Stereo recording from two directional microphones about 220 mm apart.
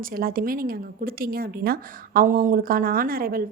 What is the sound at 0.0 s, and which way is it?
A woman's voice, 40° right (ahead or behind).